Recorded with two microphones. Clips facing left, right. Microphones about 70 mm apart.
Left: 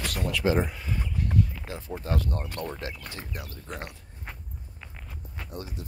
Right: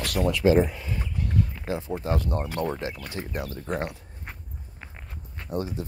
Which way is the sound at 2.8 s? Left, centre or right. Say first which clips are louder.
Right 4 dB; centre.